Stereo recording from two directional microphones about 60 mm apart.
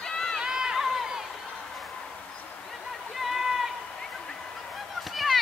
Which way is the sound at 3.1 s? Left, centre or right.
Centre.